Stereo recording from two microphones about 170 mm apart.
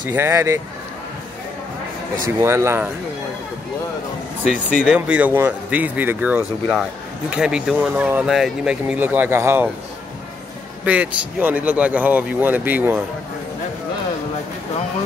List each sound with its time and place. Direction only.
0.1 s speech: 15° right (ahead or behind)
2.4 s speech: 15° right (ahead or behind)
4.5 s speech: 50° left (ahead or behind)
4.8 s speech: 5° right (ahead or behind)
10.9 s speech: 10° right (ahead or behind)